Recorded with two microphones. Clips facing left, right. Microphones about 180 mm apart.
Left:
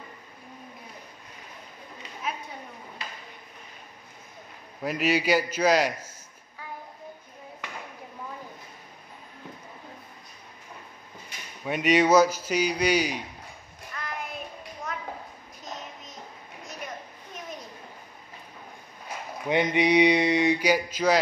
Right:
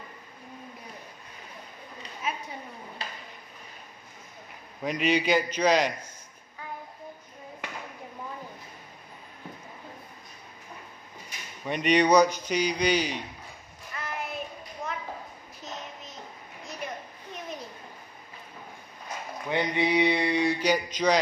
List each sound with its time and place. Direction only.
4.8 s a man's voice: 5° left (ahead or behind)
11.6 s a man's voice: 5° left (ahead or behind)
13.9 s child singing: 5° right (ahead or behind)
19.5 s mantra: 20° left (ahead or behind)